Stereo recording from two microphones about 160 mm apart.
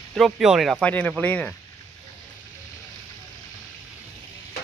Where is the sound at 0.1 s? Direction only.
Centre (ahead or behind).